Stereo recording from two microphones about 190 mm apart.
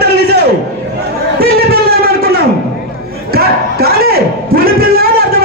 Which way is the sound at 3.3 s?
55° right (ahead or behind).